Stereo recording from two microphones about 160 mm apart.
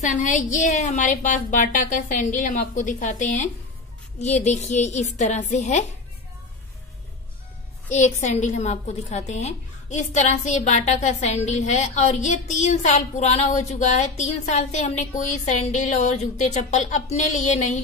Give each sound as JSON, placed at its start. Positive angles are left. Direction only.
{"t": 0.0, "sound": "a woman's voice", "side_deg": 50}
{"t": 7.9, "sound": "a woman's voice", "side_deg": 45}